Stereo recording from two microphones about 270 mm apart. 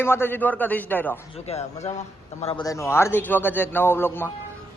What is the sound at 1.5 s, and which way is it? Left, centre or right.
A man's voice, left.